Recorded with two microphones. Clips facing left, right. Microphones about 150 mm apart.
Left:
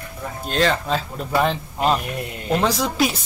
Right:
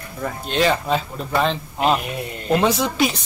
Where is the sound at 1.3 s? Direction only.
5° left (ahead or behind).